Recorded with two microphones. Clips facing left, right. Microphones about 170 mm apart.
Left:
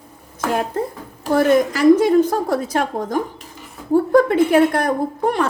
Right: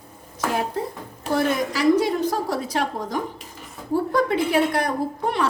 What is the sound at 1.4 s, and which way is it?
A woman's voice, 50° left (ahead or behind).